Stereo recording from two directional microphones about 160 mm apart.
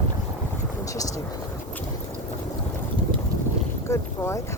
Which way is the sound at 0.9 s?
20° left (ahead or behind).